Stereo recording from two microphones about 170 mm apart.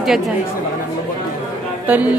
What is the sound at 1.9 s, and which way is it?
Speech, 10° right (ahead or behind).